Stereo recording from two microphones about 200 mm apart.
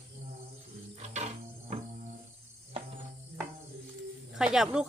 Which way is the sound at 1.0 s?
35° right (ahead or behind).